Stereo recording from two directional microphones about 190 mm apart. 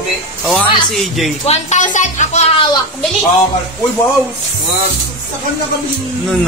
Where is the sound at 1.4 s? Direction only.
35° left (ahead or behind).